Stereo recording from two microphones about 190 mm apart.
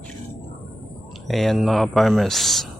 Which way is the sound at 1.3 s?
Centre (ahead or behind).